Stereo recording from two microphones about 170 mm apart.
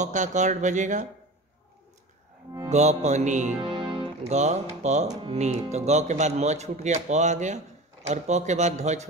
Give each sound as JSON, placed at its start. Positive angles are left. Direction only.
{"t": 0.0, "sound": "speech", "side_deg": -45}
{"t": 2.7, "sound": "speech", "side_deg": -40}
{"t": 3.5, "sound": "music", "side_deg": -30}
{"t": 4.3, "sound": "speech", "side_deg": -40}